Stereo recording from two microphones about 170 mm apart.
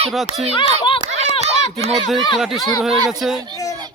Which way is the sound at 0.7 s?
30° left (ahead or behind).